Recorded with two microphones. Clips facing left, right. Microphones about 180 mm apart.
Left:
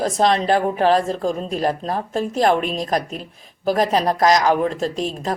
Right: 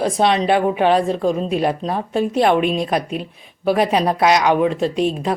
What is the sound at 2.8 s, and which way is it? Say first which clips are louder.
Speech: right 2 dB; 40° left (ahead or behind).